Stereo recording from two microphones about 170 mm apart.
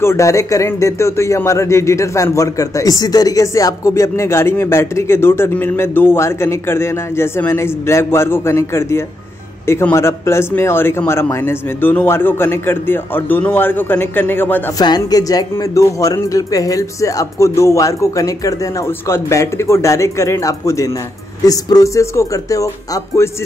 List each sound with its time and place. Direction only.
0.0 s speech: 15° left (ahead or behind)
14.8 s speech: 25° left (ahead or behind)